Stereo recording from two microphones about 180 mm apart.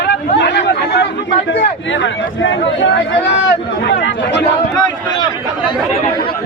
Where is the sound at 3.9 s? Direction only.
80° left.